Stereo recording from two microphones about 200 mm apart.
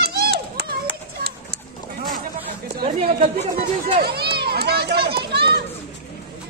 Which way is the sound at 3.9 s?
50° right (ahead or behind).